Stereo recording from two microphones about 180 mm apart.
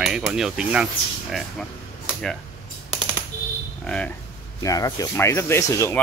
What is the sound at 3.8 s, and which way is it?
Speech, 5° left (ahead or behind).